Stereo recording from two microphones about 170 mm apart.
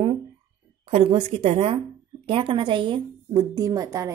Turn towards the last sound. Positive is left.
turn(degrees=-20)  # may be behind; listen again after turning